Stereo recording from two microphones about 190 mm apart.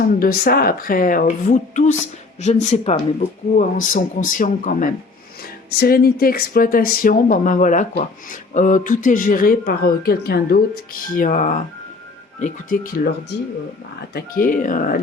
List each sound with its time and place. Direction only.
0.2 s a woman's voice: 50° left (ahead or behind)
5.7 s a woman's voice: 55° left (ahead or behind)
11.1 s a woman's voice: 45° left (ahead or behind)